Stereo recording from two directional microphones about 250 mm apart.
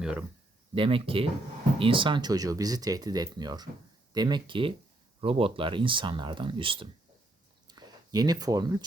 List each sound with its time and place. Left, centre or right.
0.0 s speech: centre
0.7 s speech: right
7.7 s a sound: centre